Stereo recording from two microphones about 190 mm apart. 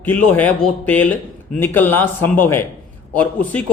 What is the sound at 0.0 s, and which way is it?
A man's voice, 10° left (ahead or behind).